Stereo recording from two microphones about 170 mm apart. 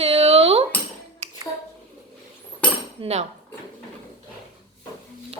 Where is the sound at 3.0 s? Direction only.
40° right (ahead or behind).